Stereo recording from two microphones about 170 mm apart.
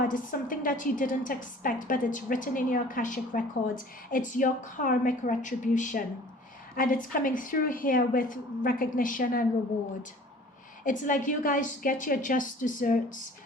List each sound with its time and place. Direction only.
0.0 s a woman's voice: 55° left (ahead or behind)
10.8 s a woman's voice: 50° left (ahead or behind)